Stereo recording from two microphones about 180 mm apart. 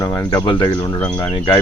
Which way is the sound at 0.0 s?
20° left (ahead or behind).